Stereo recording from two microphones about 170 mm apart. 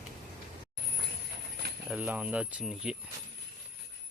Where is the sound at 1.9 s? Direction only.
10° right (ahead or behind).